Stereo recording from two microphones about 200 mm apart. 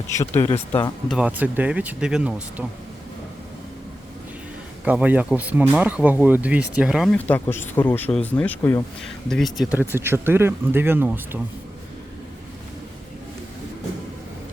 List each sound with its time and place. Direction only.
0.1 s speech: 15° left (ahead or behind)
0.4 s speech: 25° left (ahead or behind)
1.1 s speech: 5° right (ahead or behind)
4.9 s speech: 10° right (ahead or behind)